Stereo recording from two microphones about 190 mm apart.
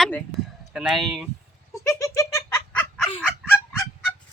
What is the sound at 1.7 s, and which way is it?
Giggle, 15° left (ahead or behind).